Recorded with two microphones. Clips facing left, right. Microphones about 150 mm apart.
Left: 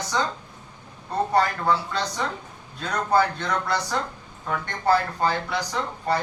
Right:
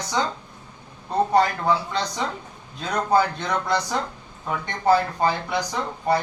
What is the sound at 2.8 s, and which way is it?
A man's voice, 15° right (ahead or behind).